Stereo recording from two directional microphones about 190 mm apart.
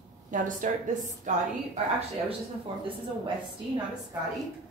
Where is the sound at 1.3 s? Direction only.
40° right (ahead or behind).